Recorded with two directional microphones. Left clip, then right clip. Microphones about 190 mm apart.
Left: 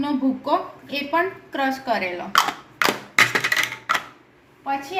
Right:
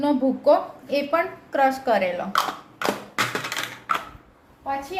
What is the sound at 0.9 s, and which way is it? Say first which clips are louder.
A woman's voice: even; 40° right (ahead or behind).